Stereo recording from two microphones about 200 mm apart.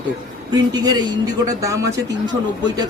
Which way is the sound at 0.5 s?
20° right (ahead or behind).